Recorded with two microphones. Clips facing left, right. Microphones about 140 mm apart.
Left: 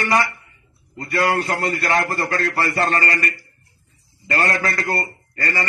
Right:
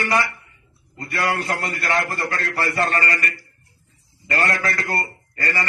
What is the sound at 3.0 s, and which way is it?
A man's voice, 35° left (ahead or behind).